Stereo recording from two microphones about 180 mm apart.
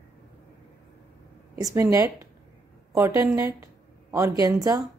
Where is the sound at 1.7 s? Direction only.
20° right (ahead or behind).